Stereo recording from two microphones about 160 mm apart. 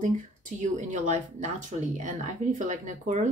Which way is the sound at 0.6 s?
50° right (ahead or behind).